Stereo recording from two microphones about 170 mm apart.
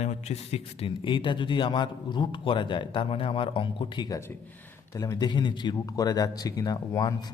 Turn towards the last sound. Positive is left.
turn(degrees=20)  # may be behind; listen again after turning